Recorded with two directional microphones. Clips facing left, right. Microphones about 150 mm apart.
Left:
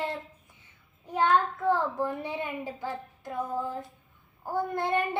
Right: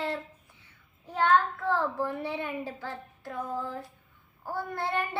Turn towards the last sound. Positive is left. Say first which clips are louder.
# left 4 dB
turn(degrees=20)  # may be behind; listen again after turning